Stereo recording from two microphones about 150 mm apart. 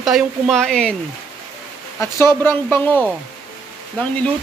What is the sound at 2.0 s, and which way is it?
Speech, 15° left (ahead or behind).